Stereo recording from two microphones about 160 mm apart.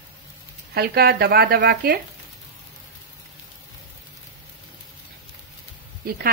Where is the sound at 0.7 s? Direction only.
75° right (ahead or behind).